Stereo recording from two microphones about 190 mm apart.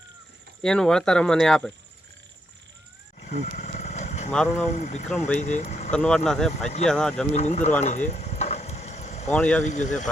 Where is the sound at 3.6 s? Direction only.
40° left (ahead or behind).